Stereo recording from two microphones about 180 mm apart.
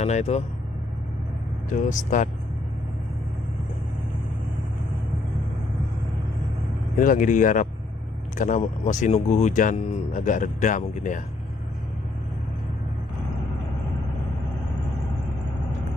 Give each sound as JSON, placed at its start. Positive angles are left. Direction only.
{"t": 0.0, "sound": "speech", "side_deg": 35}
{"t": 1.7, "sound": "speech", "side_deg": 45}
{"t": 7.0, "sound": "speech", "side_deg": 50}